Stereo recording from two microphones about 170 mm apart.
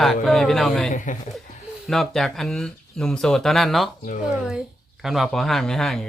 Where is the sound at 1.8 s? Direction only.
Centre (ahead or behind).